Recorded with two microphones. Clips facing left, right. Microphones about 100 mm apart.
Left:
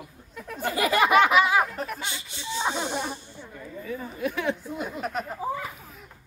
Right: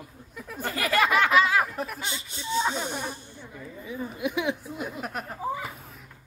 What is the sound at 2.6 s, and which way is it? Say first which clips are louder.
Speech: left 1 dB; 20° left (ahead or behind).